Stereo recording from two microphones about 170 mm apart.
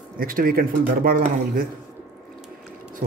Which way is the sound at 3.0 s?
60° right (ahead or behind).